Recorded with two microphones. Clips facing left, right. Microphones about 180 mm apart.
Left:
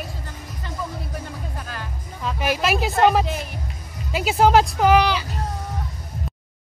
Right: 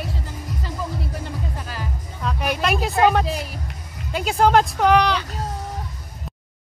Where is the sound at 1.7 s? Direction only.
5° right (ahead or behind).